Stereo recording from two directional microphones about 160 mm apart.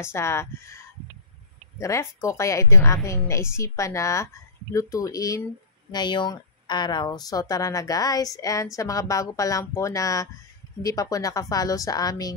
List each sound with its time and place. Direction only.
0.0 s speech: 15° left (ahead or behind)